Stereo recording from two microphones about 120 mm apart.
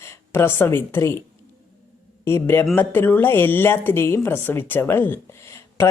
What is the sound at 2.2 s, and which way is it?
Speech, 20° left (ahead or behind).